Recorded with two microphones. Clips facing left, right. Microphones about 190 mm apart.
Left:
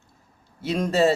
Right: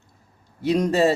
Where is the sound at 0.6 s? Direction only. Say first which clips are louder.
Right 3 dB; 15° right (ahead or behind).